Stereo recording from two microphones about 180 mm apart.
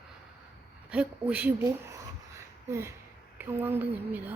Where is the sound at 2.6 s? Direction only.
15° right (ahead or behind).